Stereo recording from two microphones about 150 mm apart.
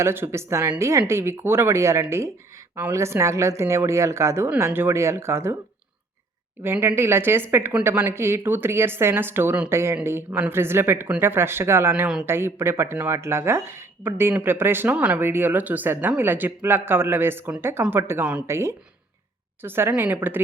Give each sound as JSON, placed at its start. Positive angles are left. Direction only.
{"t": 0.0, "sound": "speech", "side_deg": -15}
{"t": 6.6, "sound": "speech", "side_deg": -15}